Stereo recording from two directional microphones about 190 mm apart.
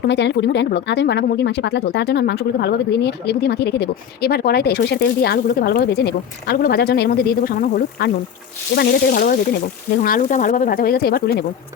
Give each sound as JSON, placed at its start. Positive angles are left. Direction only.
{"t": 0.1, "sound": "speech", "side_deg": 65}